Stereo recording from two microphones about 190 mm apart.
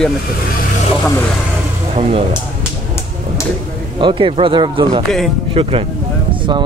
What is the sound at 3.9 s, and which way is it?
Speech, 25° right (ahead or behind).